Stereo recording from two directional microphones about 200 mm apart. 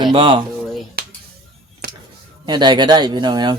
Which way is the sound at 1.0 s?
50° right (ahead or behind).